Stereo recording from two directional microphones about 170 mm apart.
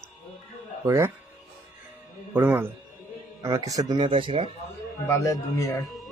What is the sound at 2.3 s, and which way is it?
Speech, 10° right (ahead or behind).